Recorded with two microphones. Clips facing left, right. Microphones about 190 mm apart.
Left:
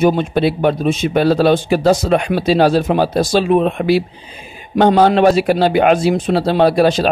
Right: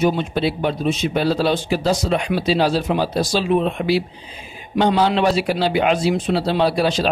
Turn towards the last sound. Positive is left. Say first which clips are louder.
# left 6 dB
turn(degrees=50)  # may be behind; listen again after turning